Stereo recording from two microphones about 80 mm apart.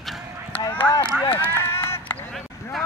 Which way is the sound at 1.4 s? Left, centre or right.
Left.